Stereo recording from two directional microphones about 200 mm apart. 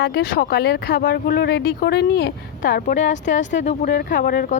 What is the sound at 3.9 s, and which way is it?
Speech, 45° left (ahead or behind).